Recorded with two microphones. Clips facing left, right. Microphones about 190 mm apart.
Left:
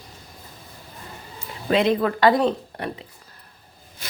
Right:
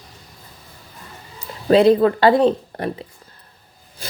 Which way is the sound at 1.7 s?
35° right (ahead or behind).